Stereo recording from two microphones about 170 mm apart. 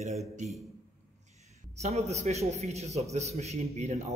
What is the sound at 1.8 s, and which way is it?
A man's voice, 40° right (ahead or behind).